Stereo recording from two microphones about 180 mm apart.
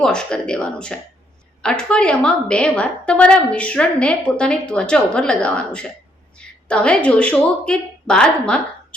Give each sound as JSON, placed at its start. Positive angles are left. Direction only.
{"t": 0.0, "sound": "a woman's voice", "side_deg": 5}